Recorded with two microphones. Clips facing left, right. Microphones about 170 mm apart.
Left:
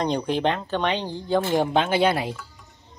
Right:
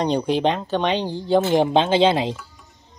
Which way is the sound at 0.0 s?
15° right (ahead or behind).